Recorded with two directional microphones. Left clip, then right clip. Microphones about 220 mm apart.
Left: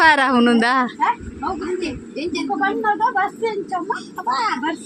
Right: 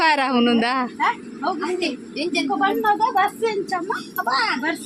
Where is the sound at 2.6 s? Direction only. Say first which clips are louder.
Left 1 dB; 5° right (ahead or behind).